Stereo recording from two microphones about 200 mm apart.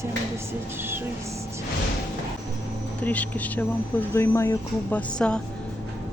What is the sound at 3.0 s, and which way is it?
Speech, 5° left (ahead or behind).